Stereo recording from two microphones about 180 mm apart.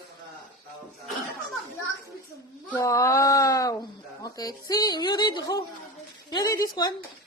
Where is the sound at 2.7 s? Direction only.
15° left (ahead or behind).